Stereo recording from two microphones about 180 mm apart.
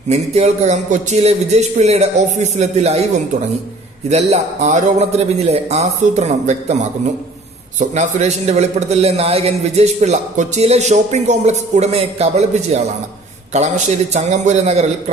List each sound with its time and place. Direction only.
0.1 s a man's voice: 35° right (ahead or behind)
4.1 s a man's voice: 40° right (ahead or behind)
7.8 s a man's voice: 40° right (ahead or behind)